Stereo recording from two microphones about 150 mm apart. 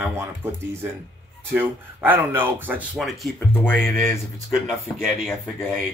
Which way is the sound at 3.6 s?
10° left (ahead or behind).